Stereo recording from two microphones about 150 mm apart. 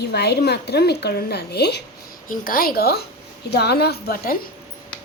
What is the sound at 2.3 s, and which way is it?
A woman's voice, 70° left (ahead or behind).